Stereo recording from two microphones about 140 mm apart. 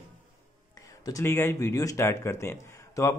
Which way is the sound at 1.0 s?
20° left (ahead or behind).